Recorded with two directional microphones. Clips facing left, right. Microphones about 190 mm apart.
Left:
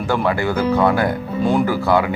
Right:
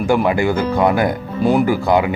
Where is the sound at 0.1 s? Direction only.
15° right (ahead or behind).